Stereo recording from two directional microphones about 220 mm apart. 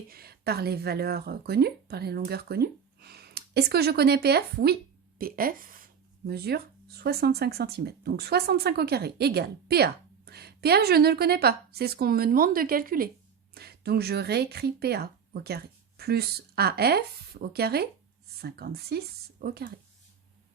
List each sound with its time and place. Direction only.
0.1 s a woman's voice: 45° right (ahead or behind)